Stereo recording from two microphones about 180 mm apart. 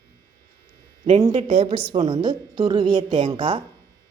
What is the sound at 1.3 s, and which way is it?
A woman's voice, 30° right (ahead or behind).